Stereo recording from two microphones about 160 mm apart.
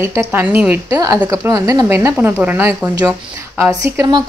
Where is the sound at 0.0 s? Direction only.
15° right (ahead or behind).